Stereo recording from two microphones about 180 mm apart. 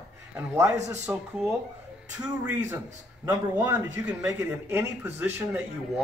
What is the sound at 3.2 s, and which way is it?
Speech, 15° right (ahead or behind).